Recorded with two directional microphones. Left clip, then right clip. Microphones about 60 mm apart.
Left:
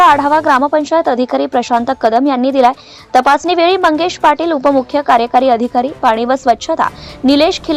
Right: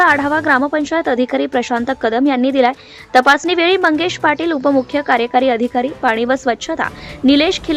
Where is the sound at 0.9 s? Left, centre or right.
Left.